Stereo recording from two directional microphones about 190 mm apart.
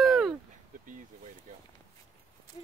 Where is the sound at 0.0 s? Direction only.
Centre (ahead or behind).